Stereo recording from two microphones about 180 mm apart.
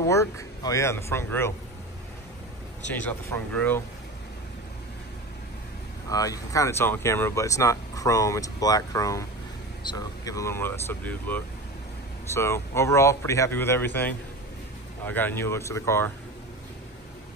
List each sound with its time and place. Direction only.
0.0 s speech: 20° left (ahead or behind)
2.9 s speech: 10° left (ahead or behind)
6.0 s speech: 20° left (ahead or behind)